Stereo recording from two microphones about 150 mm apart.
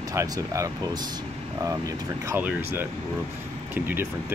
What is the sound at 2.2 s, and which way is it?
Speech, 15° right (ahead or behind).